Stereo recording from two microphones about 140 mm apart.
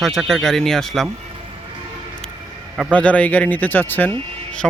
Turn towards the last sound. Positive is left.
turn(degrees=10)  # may be behind; listen again after turning